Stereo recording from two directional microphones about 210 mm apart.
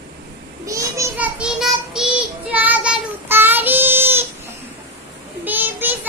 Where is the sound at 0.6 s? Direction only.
15° right (ahead or behind).